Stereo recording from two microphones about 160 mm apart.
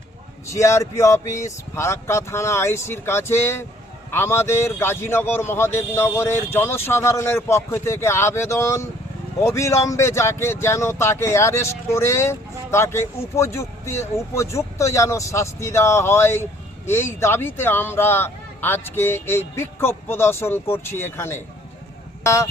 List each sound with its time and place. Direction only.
0.4 s speech: 20° left (ahead or behind)